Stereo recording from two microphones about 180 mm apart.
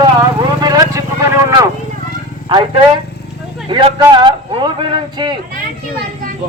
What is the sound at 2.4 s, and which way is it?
A man's voice, 25° right (ahead or behind).